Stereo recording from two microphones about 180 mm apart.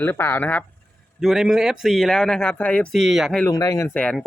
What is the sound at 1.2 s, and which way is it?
Speech, centre (ahead or behind).